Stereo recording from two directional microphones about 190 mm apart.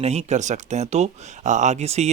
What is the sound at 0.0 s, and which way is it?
Speech, 35° right (ahead or behind).